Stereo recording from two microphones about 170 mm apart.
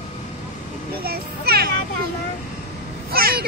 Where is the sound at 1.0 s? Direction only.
65° right (ahead or behind).